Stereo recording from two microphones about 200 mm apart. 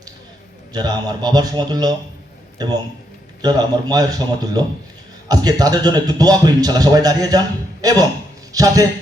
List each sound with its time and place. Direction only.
0.7 s a man's voice: 20° right (ahead or behind)